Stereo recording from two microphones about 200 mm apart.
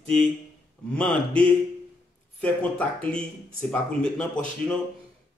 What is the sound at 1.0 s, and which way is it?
Speech, 5° left (ahead or behind).